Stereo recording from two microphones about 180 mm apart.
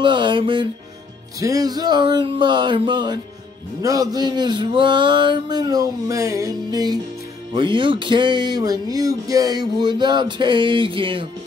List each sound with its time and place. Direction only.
0.0 s speech: 25° right (ahead or behind)